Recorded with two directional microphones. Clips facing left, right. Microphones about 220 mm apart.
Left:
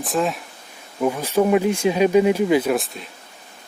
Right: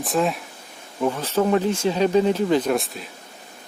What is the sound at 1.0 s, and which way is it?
Speech, 10° left (ahead or behind).